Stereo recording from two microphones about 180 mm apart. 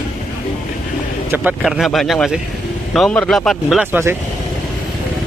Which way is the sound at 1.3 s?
10° right (ahead or behind).